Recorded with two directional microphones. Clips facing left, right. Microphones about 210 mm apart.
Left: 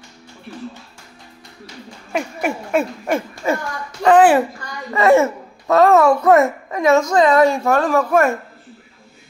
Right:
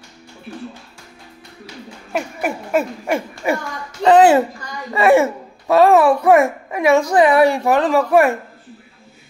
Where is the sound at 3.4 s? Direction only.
15° right (ahead or behind).